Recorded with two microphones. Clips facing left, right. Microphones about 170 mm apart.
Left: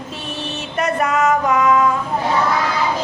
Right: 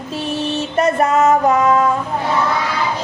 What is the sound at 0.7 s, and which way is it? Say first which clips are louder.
Music: right 4 dB; 30° right (ahead or behind).